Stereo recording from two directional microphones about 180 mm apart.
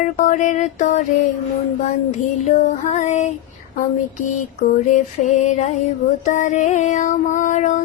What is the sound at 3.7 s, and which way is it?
Mantra, 45° left (ahead or behind).